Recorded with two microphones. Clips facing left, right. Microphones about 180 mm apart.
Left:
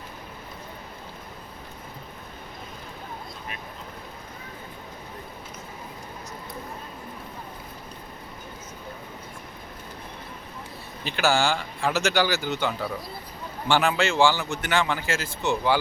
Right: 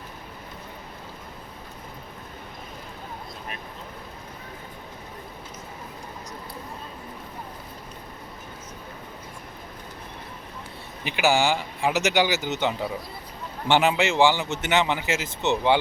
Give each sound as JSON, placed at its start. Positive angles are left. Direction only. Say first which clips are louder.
{"t": 11.0, "sound": "speech", "louder": "right 1 dB", "side_deg": -15}